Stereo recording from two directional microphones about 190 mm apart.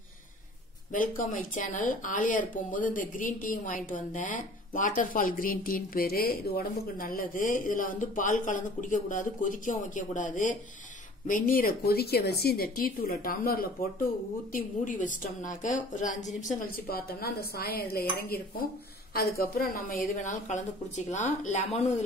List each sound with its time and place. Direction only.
0.9 s a woman's voice: 45° left (ahead or behind)